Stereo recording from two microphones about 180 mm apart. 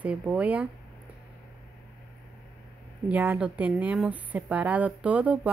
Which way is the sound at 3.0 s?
10° right (ahead or behind).